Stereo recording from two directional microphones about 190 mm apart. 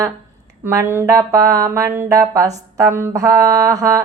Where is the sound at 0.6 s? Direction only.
15° right (ahead or behind).